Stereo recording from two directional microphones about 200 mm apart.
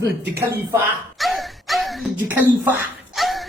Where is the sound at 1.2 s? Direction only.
Centre (ahead or behind).